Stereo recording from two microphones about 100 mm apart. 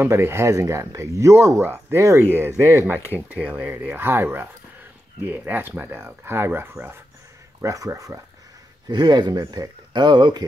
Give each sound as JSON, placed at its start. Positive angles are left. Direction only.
{"t": 0.0, "sound": "speech", "side_deg": -25}
{"t": 3.2, "sound": "speech", "side_deg": -15}
{"t": 7.6, "sound": "speech", "side_deg": -35}
{"t": 8.8, "sound": "speech", "side_deg": -45}